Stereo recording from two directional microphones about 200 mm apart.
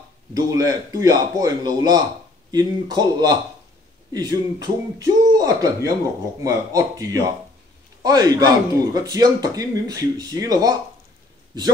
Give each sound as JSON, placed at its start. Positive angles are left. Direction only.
{"t": 0.3, "sound": "speech", "side_deg": -15}